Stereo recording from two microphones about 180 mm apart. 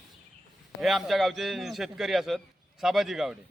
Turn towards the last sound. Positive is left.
turn(degrees=0)  # may be behind; listen again after turning